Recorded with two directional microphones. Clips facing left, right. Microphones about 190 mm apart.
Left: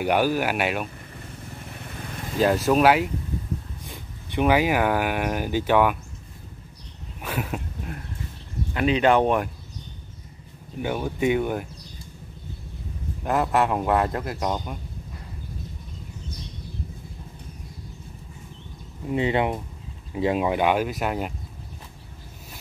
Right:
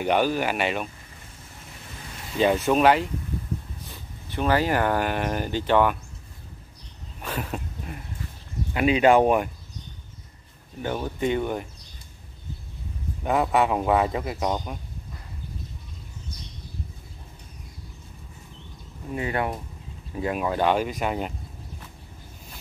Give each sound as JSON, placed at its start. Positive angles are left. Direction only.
{"t": 0.0, "sound": "speech", "side_deg": 10}
{"t": 2.3, "sound": "a man's voice", "side_deg": 0}
{"t": 7.2, "sound": "a sound", "side_deg": 5}
{"t": 8.7, "sound": "speech", "side_deg": -10}
{"t": 10.8, "sound": "speech", "side_deg": 10}
{"t": 13.2, "sound": "a man's voice", "side_deg": 0}
{"t": 19.1, "sound": "speech", "side_deg": 20}